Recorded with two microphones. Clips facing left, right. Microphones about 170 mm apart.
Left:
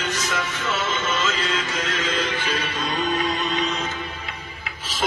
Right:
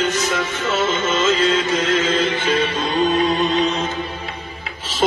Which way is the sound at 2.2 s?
25° right (ahead or behind).